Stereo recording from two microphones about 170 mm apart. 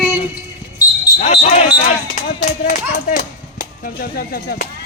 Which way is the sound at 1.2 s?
40° left (ahead or behind).